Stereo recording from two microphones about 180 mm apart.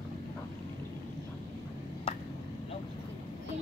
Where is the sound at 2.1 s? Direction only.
35° left (ahead or behind).